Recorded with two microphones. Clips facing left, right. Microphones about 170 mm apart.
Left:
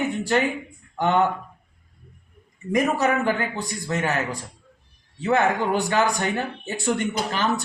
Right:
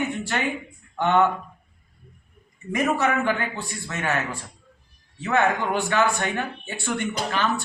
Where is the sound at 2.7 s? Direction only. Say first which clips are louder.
Left 2 dB; 40° left (ahead or behind).